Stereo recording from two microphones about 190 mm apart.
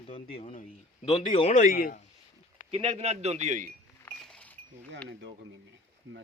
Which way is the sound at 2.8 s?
35° right (ahead or behind).